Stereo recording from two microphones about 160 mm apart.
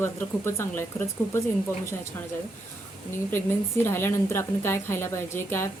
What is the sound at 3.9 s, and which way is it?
A woman's voice, 15° left (ahead or behind).